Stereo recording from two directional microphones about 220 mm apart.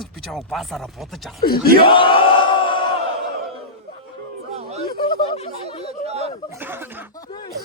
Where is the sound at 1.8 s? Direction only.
25° left (ahead or behind).